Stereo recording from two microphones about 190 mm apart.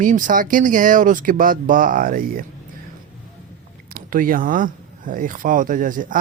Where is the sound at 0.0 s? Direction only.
45° right (ahead or behind).